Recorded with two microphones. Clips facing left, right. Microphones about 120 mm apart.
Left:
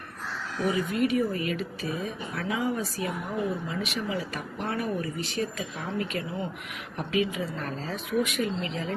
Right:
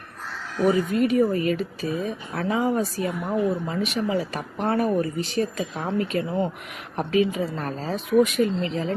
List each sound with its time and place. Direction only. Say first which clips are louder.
0.6 s speech: right 6 dB; 35° right (ahead or behind)